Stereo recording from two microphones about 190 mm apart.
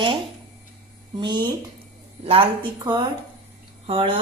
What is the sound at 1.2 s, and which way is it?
Speech, 25° right (ahead or behind).